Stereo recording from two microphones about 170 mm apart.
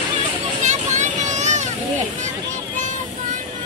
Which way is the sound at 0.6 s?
45° right (ahead or behind).